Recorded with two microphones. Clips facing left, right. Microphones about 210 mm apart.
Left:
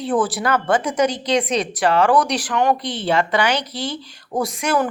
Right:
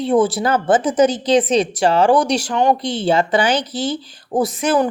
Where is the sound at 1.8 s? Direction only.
30° right (ahead or behind).